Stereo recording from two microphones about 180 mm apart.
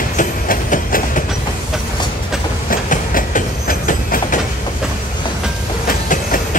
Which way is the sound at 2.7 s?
50° left (ahead or behind).